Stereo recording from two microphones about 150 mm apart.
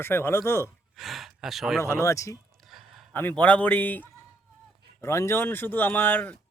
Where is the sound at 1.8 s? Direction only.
20° left (ahead or behind).